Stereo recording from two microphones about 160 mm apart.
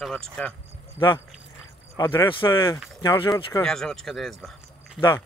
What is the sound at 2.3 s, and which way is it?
Speech, 30° left (ahead or behind).